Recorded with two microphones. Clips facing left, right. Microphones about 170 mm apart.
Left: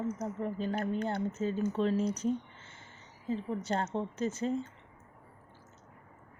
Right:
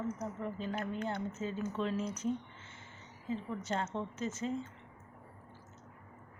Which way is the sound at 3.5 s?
35° left (ahead or behind).